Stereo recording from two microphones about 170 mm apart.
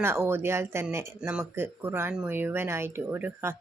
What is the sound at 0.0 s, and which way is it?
Speech, 15° right (ahead or behind).